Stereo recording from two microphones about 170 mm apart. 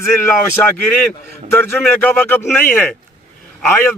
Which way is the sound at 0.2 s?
15° left (ahead or behind).